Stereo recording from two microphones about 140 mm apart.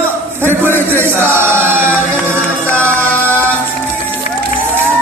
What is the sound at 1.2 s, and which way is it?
Chant, 15° right (ahead or behind).